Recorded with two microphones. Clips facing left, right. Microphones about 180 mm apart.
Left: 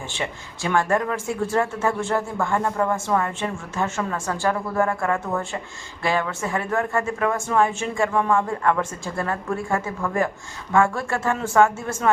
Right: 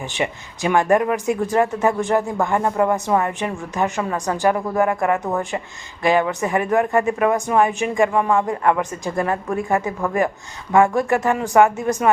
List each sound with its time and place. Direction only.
0.1 s speech: 15° right (ahead or behind)